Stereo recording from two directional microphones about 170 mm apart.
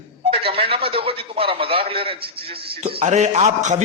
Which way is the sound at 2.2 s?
30° right (ahead or behind).